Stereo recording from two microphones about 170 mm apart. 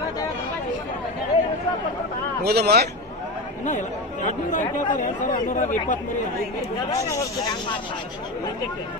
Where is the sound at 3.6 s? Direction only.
45° left (ahead or behind).